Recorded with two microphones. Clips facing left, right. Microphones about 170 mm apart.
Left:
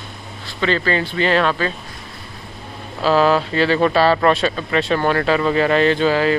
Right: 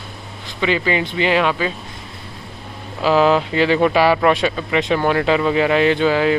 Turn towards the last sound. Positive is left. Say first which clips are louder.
# even
turn(degrees=-15)  # may be behind; listen again after turning